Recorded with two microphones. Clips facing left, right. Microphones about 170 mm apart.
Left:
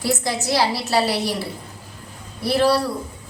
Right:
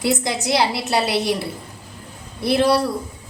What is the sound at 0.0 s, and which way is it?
A woman's voice, 20° right (ahead or behind).